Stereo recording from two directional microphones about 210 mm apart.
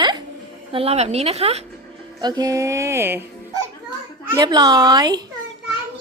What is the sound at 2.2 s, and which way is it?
Music, 20° right (ahead or behind).